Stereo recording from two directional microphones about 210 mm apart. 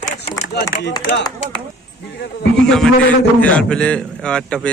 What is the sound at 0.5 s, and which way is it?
Speech, 50° left (ahead or behind).